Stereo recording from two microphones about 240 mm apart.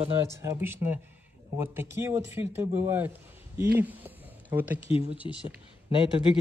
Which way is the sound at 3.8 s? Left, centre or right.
Centre.